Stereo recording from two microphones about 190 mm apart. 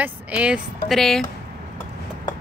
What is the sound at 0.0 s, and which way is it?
Speech, 10° right (ahead or behind).